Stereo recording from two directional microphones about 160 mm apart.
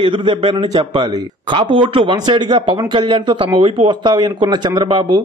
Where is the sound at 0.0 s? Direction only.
30° right (ahead or behind).